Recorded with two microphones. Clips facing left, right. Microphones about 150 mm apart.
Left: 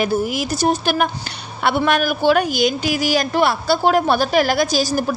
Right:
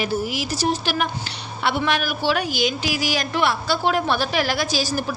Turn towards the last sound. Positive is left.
turn(degrees=45)  # may be behind; listen again after turning